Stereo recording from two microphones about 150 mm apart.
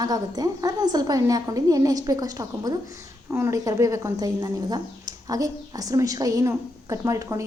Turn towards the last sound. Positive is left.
turn(degrees=-20)  # may be behind; listen again after turning